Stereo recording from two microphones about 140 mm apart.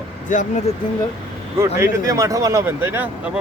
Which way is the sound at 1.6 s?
25° right (ahead or behind).